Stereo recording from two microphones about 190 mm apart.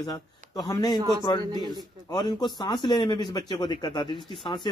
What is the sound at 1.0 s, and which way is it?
Speech, 20° right (ahead or behind).